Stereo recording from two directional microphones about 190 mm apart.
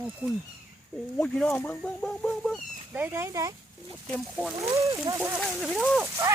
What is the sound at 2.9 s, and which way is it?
Speech, 10° right (ahead or behind).